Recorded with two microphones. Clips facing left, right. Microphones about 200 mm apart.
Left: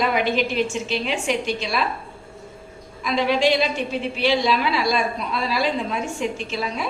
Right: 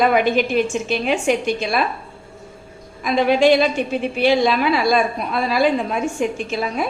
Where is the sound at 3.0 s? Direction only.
50° right (ahead or behind).